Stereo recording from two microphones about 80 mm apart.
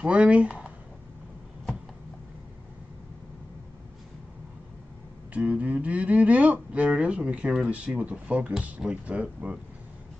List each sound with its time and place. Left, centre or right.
0.0 s speech: centre
5.3 s speech: centre